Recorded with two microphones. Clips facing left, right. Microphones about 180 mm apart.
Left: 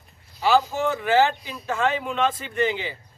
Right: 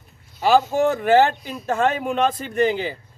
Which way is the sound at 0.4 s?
45° right (ahead or behind).